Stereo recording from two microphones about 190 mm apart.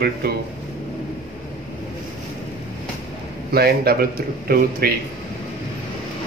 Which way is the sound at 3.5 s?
55° right (ahead or behind).